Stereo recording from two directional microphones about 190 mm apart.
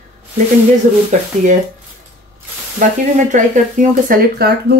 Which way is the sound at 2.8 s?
40° right (ahead or behind).